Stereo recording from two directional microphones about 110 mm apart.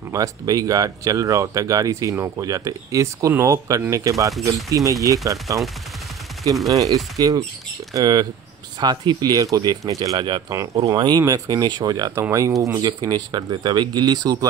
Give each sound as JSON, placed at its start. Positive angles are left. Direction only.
{"t": 0.1, "sound": "speech", "side_deg": -30}
{"t": 4.3, "sound": "speech", "side_deg": 0}
{"t": 4.6, "sound": "speech", "side_deg": -30}
{"t": 6.7, "sound": "speech", "side_deg": -30}